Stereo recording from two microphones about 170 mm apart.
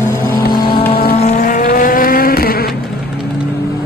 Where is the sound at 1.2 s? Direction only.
45° left (ahead or behind); by 2.7 s 60° left (ahead or behind).